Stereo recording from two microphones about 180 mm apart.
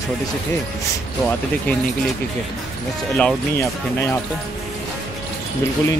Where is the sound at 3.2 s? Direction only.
10° left (ahead or behind).